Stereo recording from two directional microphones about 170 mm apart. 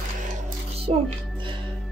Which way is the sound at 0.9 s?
35° right (ahead or behind).